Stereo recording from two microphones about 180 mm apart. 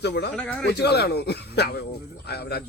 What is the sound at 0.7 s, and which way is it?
Speech, 65° left (ahead or behind).